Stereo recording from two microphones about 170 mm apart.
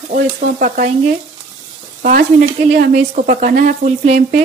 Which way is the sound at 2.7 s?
80° right.